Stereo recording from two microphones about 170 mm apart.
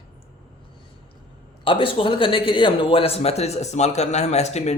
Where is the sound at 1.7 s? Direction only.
30° left (ahead or behind).